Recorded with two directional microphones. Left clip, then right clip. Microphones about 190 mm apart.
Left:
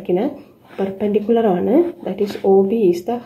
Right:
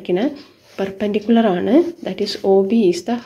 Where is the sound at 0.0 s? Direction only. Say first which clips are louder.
Even; 20° right (ahead or behind).